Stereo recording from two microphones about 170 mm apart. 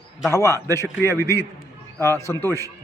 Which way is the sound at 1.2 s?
15° left (ahead or behind).